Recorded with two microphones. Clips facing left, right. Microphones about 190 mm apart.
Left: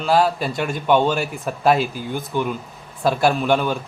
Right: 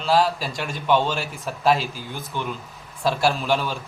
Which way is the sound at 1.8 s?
55° left (ahead or behind).